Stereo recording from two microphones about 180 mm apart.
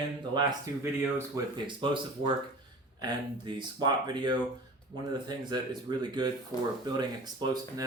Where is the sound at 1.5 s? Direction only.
25° right (ahead or behind).